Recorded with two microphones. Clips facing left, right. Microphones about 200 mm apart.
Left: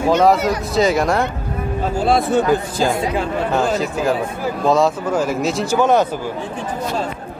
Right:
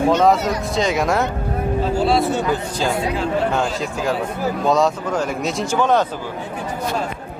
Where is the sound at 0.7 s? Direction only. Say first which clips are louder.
Left 3 dB; centre (ahead or behind).